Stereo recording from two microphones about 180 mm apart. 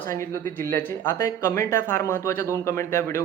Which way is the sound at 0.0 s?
15° left (ahead or behind).